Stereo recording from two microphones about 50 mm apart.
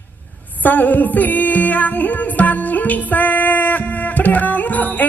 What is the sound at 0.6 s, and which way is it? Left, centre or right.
Music, left.